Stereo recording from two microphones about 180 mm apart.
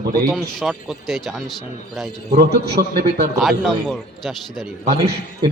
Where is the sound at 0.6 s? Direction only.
Centre (ahead or behind).